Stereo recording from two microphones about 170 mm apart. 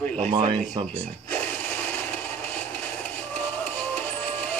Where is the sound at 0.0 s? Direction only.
10° left (ahead or behind).